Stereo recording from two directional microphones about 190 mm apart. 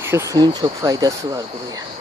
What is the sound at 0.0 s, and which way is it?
Speech, 15° right (ahead or behind).